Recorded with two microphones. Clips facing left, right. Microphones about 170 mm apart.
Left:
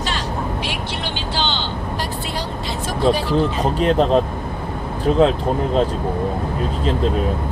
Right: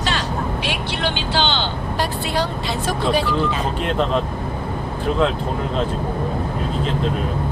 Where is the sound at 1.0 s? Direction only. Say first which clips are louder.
Right 4 dB; 65° right (ahead or behind).